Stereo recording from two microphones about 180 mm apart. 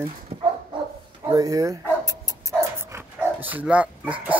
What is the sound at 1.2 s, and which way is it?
Dog, 20° right (ahead or behind).